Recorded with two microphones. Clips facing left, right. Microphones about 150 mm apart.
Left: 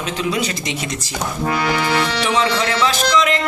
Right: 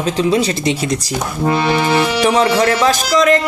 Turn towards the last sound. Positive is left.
turn(degrees=-40)  # may be behind; listen again after turning